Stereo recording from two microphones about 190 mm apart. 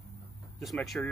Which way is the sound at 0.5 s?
Centre (ahead or behind).